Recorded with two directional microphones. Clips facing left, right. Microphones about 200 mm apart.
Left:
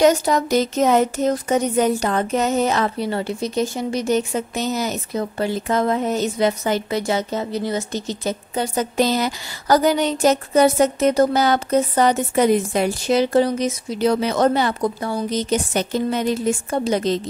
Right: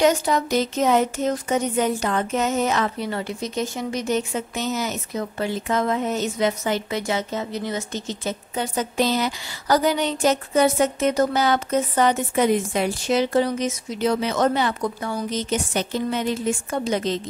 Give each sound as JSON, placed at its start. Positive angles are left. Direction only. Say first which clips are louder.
{"t": 0.0, "sound": "speech", "louder": "left 3 dB", "side_deg": 40}